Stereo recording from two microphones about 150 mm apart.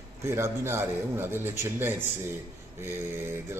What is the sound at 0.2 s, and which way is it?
A man's voice, 15° right (ahead or behind).